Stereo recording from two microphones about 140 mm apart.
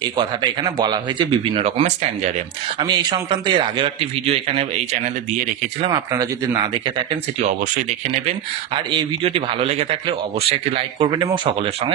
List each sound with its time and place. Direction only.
0.2 s a man's voice: 30° right (ahead or behind)
1.6 s speech: 50° right (ahead or behind)
2.8 s a man's voice: 35° right (ahead or behind)
5.9 s a man's voice: 30° right (ahead or behind)
8.3 s a man's voice: 40° right (ahead or behind)